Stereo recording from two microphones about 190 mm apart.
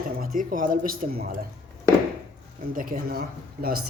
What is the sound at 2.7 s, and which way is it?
Speech, 45° right (ahead or behind).